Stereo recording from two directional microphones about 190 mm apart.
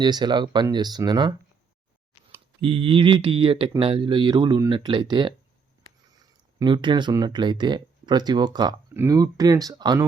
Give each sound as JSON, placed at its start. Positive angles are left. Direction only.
{"t": 0.0, "sound": "speech", "side_deg": -20}
{"t": 2.6, "sound": "speech", "side_deg": -30}
{"t": 6.6, "sound": "speech", "side_deg": -25}